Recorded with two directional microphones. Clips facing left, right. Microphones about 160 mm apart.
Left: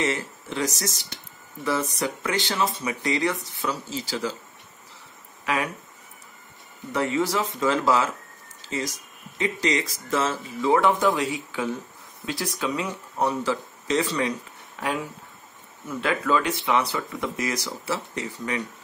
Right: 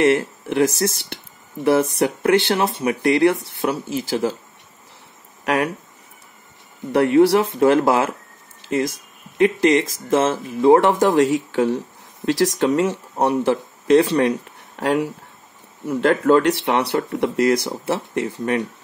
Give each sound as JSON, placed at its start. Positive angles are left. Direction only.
{"t": 0.0, "sound": "speech", "side_deg": -60}
{"t": 5.4, "sound": "speech", "side_deg": -70}
{"t": 6.9, "sound": "speech", "side_deg": -70}
{"t": 12.3, "sound": "speech", "side_deg": -90}
{"t": 12.7, "sound": "speech", "side_deg": -75}
{"t": 14.8, "sound": "speech", "side_deg": -80}